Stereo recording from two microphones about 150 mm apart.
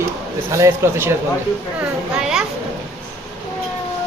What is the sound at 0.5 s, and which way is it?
Speech, 20° right (ahead or behind).